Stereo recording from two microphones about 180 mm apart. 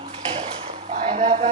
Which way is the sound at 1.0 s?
40° right (ahead or behind).